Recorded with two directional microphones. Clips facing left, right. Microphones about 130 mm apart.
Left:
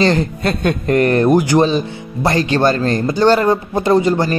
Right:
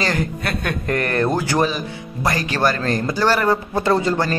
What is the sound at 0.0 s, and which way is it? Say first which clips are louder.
Speech: left 7 dB; 25° left (ahead or behind).